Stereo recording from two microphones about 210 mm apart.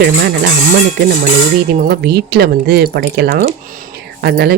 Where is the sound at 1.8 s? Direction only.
50° right (ahead or behind).